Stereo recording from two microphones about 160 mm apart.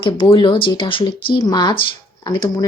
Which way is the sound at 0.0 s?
30° left (ahead or behind).